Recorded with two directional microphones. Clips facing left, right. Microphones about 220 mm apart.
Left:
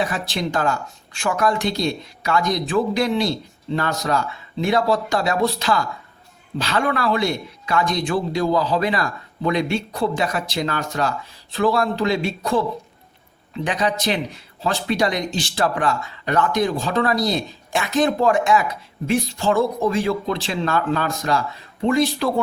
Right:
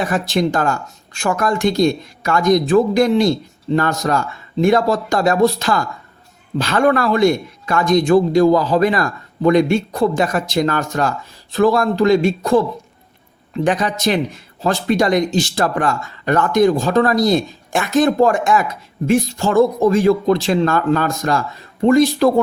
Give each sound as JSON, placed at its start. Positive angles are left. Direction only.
{"t": 0.0, "sound": "speech", "side_deg": -45}